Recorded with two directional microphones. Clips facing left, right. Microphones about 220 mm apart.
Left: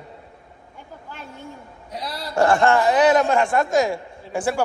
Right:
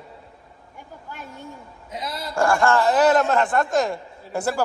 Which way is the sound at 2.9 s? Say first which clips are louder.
Left 1 dB; centre (ahead or behind).